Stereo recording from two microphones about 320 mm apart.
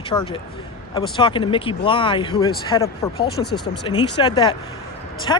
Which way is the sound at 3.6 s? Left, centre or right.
Left.